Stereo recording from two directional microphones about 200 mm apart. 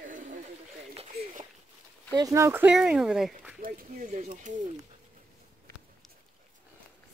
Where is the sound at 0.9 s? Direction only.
30° right (ahead or behind).